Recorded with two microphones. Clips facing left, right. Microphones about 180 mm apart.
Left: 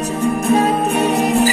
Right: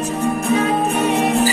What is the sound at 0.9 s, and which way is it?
Music, 40° left (ahead or behind).